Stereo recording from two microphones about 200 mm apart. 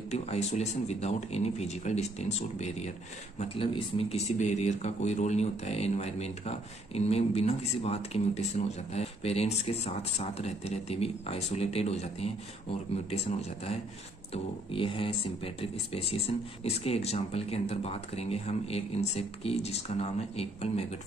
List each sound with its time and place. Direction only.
0.3 s speech: 35° left (ahead or behind)